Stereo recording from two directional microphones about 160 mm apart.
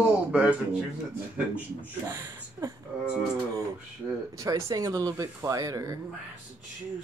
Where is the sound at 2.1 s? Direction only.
20° right (ahead or behind).